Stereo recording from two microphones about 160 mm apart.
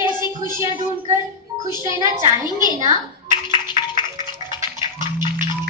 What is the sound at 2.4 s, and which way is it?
Clapping, 25° left (ahead or behind).